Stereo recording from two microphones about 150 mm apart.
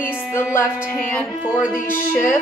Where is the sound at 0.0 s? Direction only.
15° left (ahead or behind).